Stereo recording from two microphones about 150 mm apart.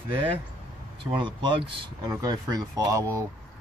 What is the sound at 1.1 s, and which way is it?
A man's voice, 35° right (ahead or behind).